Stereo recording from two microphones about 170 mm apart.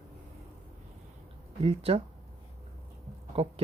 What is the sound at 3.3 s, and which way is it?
Speech, 35° right (ahead or behind).